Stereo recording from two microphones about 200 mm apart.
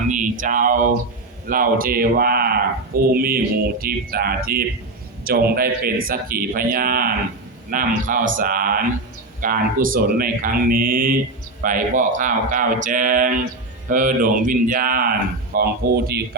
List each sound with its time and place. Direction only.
0.1 s speech: 40° right (ahead or behind)